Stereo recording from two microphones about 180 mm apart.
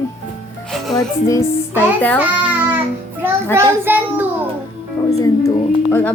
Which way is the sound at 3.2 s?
15° right (ahead or behind).